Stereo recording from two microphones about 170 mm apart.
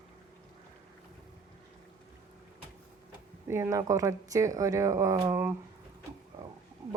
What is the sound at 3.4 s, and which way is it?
Speech, 15° right (ahead or behind).